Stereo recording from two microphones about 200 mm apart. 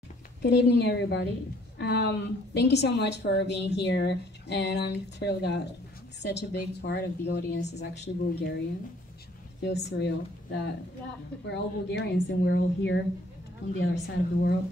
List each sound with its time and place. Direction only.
0.4 s a woman's voice: 55° left (ahead or behind)
9.6 s a woman's voice: 60° left (ahead or behind)